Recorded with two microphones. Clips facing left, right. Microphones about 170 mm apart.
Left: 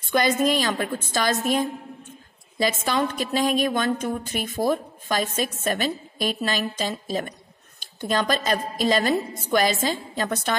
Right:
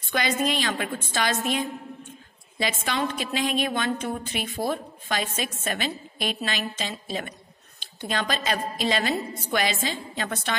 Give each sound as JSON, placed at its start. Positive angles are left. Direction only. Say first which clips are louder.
{"t": 0.1, "sound": "a woman's voice", "louder": "left 5 dB", "side_deg": 45}